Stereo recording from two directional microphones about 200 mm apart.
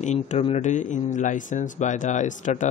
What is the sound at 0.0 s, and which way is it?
Speech, 35° left (ahead or behind).